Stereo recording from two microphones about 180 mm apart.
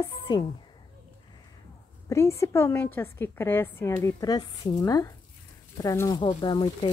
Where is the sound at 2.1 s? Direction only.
15° left (ahead or behind).